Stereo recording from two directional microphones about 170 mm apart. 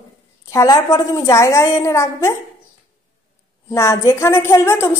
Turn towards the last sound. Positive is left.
turn(degrees=15)  # may be behind; listen again after turning